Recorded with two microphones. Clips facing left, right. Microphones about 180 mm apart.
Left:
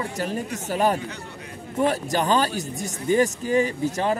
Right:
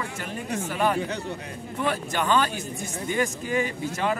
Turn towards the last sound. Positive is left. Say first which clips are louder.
# left 3 dB
turn(degrees=35)  # may be behind; listen again after turning